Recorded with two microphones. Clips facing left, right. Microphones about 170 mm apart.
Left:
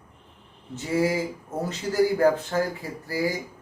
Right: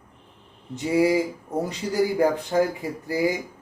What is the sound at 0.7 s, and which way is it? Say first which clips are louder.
A man's voice: right 4 dB; 15° right (ahead or behind).